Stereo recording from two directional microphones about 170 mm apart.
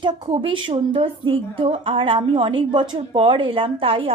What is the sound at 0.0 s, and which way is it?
A woman's voice, 30° right (ahead or behind).